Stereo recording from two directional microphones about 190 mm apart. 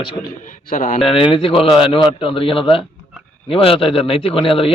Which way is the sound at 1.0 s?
30° left (ahead or behind).